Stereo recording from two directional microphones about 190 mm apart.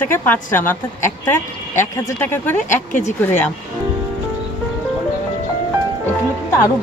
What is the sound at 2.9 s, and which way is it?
Speech, 40° left (ahead or behind).